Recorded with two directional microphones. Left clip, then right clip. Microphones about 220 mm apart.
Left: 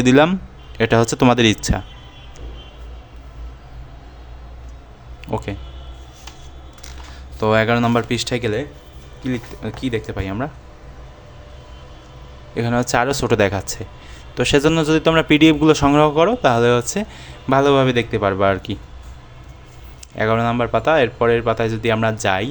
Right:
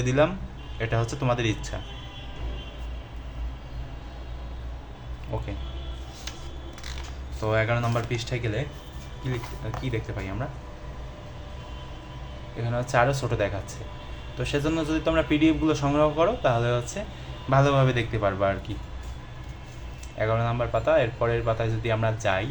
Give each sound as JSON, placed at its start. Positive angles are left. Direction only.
{"t": 0.0, "sound": "a man's voice", "side_deg": 55}
{"t": 5.3, "sound": "a man's voice", "side_deg": 45}
{"t": 7.3, "sound": "speech", "side_deg": 55}
{"t": 9.8, "sound": "speech", "side_deg": 55}
{"t": 12.5, "sound": "a man's voice", "side_deg": 50}
{"t": 20.1, "sound": "a man's voice", "side_deg": 50}